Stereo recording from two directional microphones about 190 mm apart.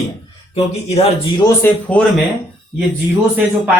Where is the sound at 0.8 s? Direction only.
30° left (ahead or behind).